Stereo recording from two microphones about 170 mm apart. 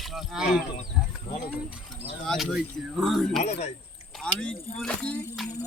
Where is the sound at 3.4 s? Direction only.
40° left (ahead or behind).